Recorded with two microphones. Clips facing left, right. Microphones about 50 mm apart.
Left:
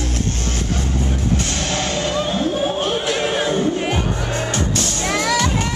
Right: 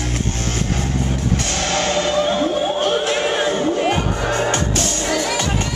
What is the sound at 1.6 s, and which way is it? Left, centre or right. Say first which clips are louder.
Music: right 3 dB; right.